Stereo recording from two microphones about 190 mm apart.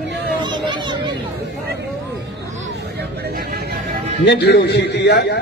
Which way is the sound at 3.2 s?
55° right (ahead or behind).